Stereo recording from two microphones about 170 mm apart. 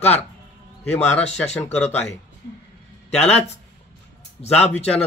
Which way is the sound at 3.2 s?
40° left (ahead or behind).